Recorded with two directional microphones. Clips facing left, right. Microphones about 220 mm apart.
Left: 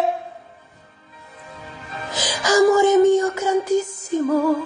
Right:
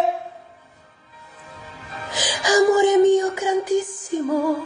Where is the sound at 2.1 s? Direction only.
15° right (ahead or behind).